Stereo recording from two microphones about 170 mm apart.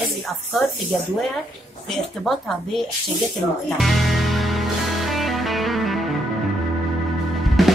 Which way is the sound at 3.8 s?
Centre (ahead or behind).